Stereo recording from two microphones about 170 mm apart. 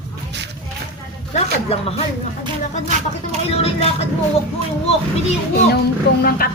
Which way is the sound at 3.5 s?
35° left (ahead or behind).